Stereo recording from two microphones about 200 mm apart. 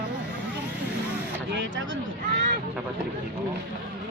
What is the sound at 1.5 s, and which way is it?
Speech, 70° right (ahead or behind).